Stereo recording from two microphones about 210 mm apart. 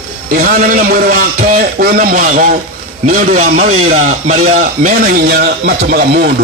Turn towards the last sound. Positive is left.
turn(degrees=-50)  # may be behind; listen again after turning